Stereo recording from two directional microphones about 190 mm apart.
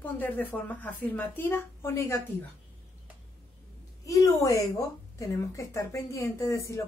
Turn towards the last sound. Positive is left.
turn(degrees=15)  # may be behind; listen again after turning